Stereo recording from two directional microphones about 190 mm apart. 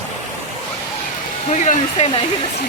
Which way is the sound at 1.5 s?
40° left (ahead or behind).